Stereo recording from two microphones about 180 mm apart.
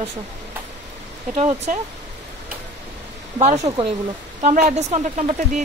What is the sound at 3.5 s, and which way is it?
Speech, 25° right (ahead or behind).